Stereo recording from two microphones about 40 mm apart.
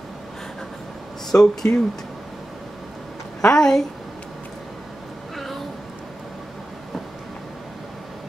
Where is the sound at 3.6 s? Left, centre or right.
Centre.